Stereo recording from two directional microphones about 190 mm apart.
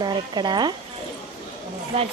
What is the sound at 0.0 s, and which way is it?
Speech, 25° right (ahead or behind).